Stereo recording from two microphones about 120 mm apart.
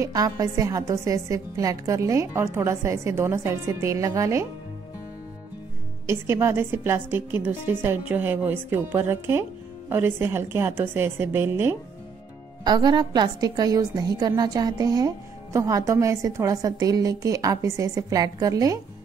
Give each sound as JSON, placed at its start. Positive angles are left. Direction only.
{"t": 0.0, "sound": "a woman's voice", "side_deg": -30}
{"t": 6.0, "sound": "a woman's voice", "side_deg": -20}
{"t": 12.6, "sound": "a woman's voice", "side_deg": -35}